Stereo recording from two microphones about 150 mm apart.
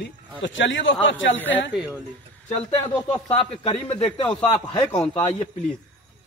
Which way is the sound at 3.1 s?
40° left (ahead or behind).